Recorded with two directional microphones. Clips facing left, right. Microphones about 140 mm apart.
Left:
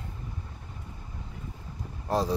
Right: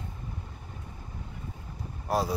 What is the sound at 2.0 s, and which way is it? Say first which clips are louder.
Vehicle: left 1 dB; 10° right (ahead or behind).